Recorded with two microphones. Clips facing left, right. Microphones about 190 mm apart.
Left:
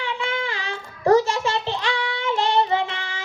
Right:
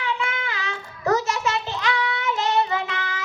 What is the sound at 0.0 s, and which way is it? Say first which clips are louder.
Child singing: left 1 dB; 30° left (ahead or behind).